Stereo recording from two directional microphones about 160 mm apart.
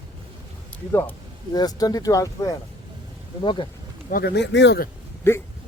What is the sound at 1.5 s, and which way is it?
Speech, 25° left (ahead or behind).